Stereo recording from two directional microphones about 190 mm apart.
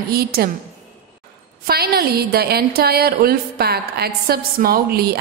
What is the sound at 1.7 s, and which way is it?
A woman's voice, 55° right (ahead or behind).